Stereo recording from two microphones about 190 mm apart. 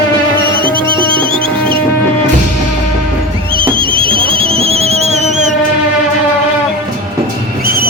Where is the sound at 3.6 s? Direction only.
25° right (ahead or behind).